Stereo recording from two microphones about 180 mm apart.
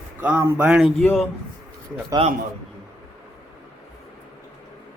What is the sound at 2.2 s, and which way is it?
Speech, 30° right (ahead or behind).